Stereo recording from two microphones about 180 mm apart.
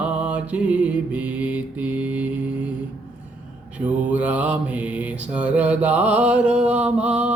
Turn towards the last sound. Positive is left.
turn(degrees=-5)  # may be behind; listen again after turning